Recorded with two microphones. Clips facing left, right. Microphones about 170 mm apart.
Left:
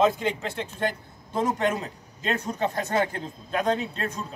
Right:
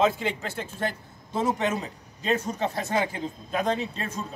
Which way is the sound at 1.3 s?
5° right (ahead or behind).